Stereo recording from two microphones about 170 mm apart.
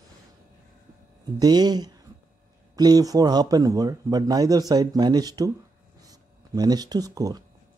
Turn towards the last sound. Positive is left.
turn(degrees=-20)  # may be behind; listen again after turning